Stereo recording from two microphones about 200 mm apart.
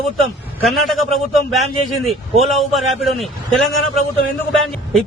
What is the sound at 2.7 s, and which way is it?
Speech, centre (ahead or behind).